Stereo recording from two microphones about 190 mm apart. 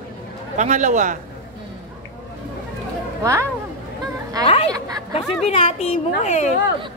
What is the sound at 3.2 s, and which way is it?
Speech, 15° right (ahead or behind).